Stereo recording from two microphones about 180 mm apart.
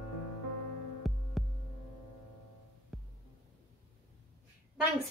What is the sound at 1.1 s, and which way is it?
Heart sounds, centre (ahead or behind).